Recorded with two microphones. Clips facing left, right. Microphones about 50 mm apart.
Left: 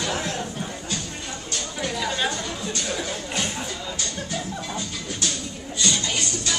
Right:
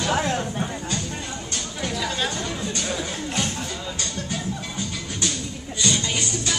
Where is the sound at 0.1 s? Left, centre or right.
Right.